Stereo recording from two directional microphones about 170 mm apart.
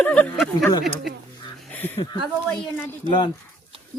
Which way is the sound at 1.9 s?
30° left (ahead or behind).